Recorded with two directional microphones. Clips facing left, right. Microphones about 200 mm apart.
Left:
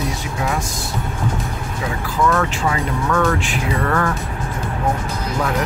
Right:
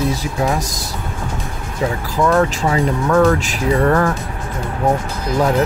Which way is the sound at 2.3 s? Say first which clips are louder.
Right 4 dB; 35° right (ahead or behind).